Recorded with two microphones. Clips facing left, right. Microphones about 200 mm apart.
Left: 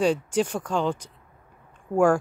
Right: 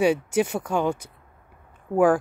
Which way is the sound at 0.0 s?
10° right (ahead or behind).